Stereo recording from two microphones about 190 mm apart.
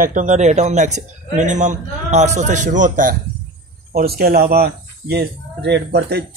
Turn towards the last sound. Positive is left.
turn(degrees=-60)  # may be behind; listen again after turning